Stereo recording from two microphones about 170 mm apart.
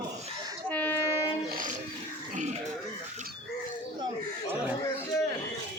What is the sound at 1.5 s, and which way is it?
Train, 50° right (ahead or behind).